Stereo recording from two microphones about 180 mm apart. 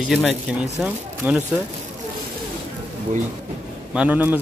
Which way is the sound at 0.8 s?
10° right (ahead or behind).